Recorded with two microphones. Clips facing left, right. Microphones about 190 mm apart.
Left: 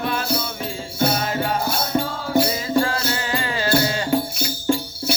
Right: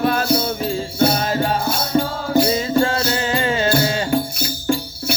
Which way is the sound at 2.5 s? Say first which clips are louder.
Right 3 dB; 25° right (ahead or behind).